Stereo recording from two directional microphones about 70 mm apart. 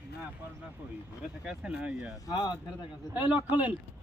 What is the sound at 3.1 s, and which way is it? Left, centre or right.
Speech, right.